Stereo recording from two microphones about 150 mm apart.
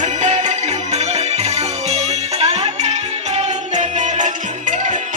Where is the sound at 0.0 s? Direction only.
50° right (ahead or behind).